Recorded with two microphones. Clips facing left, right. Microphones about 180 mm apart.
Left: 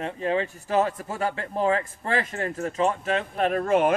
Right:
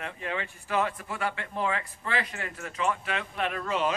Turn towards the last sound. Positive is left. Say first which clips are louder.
# left 8 dB
turn(degrees=50)  # may be behind; listen again after turning